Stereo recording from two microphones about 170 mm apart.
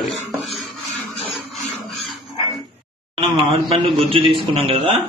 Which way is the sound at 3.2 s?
35° right (ahead or behind).